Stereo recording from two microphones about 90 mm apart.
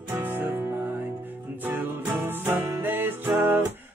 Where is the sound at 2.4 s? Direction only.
25° right (ahead or behind).